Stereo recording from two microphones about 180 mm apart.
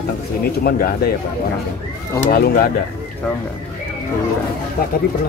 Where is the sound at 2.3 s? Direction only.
60° left (ahead or behind).